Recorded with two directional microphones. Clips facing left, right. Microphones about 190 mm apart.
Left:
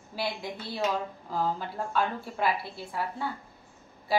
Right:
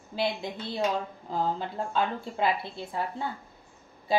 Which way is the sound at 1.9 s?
20° right (ahead or behind).